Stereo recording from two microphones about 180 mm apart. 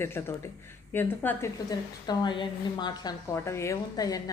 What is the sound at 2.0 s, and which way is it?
A woman's voice, 25° left (ahead or behind).